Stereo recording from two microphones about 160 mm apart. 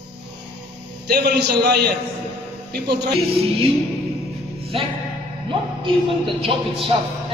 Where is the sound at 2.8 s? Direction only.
90° right.